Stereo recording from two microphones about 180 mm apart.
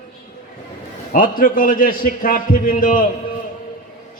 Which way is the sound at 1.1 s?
50° left (ahead or behind).